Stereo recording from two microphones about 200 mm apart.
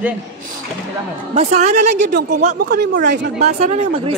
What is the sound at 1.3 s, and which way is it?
Speech, 35° right (ahead or behind).